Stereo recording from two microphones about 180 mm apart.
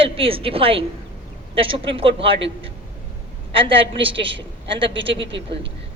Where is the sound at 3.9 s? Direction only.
30° right (ahead or behind).